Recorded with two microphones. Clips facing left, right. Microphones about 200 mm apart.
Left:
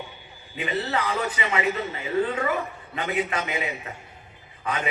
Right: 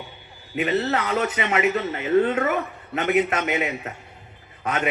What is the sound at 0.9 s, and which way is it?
Speech, 70° right (ahead or behind).